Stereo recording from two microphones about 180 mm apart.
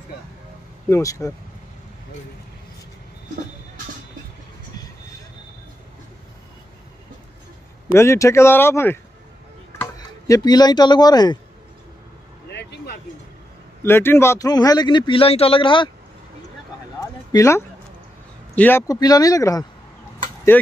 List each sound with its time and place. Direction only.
0.8 s speech: 15° left (ahead or behind)
7.9 s speech: 15° left (ahead or behind)
12.4 s a sound: 70° left (ahead or behind)
13.8 s speech: 15° left (ahead or behind)
17.0 s a sound: 15° left (ahead or behind)
18.6 s speech: 15° left (ahead or behind)